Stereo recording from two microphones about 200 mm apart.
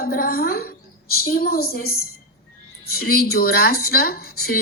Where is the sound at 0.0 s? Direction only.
45° left (ahead or behind).